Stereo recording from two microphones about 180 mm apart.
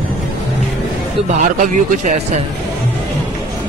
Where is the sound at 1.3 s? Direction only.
45° right (ahead or behind).